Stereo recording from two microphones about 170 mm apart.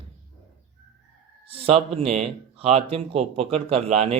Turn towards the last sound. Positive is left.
turn(degrees=-40)  # may be behind; listen again after turning